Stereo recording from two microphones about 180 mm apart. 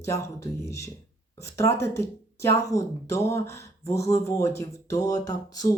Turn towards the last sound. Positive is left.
turn(degrees=20)  # may be behind; listen again after turning